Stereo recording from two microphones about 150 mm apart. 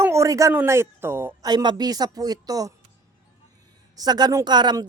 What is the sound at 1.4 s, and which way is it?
A woman's voice, 30° right (ahead or behind).